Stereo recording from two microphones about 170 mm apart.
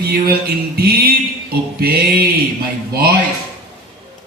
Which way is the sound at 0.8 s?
60° right (ahead or behind).